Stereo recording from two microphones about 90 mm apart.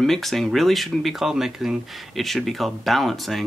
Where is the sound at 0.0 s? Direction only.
Centre (ahead or behind).